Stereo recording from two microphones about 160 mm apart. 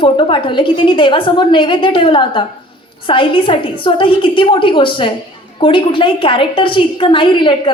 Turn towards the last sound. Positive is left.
turn(degrees=30)  # may be behind; listen again after turning